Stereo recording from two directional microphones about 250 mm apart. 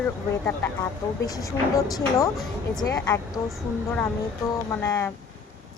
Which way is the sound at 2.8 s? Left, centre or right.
Centre.